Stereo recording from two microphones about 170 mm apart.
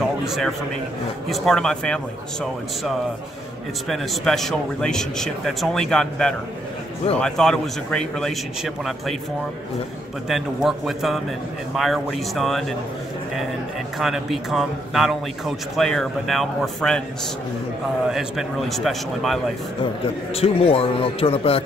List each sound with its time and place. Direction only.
0.2 s a man's voice: centre (ahead or behind)
3.9 s a man's voice: centre (ahead or behind)
10.2 s a man's voice: centre (ahead or behind)
13.9 s a man's voice: centre (ahead or behind)
18.1 s a man's voice: centre (ahead or behind)
20.3 s speech: 35° left (ahead or behind)